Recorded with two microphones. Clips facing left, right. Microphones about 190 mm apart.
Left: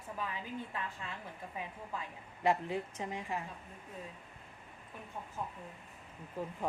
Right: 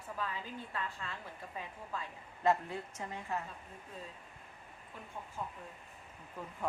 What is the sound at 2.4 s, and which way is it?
Speech, 15° left (ahead or behind).